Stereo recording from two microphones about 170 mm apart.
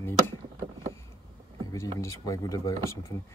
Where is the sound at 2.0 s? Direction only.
20° left (ahead or behind).